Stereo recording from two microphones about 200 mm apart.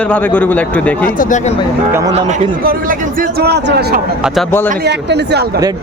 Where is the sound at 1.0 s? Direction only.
40° left (ahead or behind).